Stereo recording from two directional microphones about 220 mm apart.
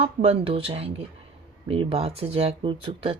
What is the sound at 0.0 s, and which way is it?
Speech, 25° right (ahead or behind).